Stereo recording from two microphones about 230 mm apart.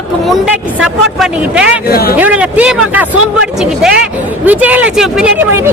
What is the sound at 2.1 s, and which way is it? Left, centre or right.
A man's voice, centre.